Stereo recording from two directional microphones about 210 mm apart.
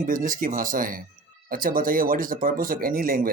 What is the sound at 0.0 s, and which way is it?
Speech, 40° right (ahead or behind).